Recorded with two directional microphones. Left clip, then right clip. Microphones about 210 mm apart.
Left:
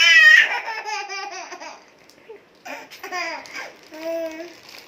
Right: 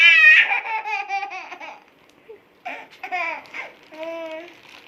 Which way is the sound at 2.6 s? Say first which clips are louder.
Right 2 dB; 5° right (ahead or behind).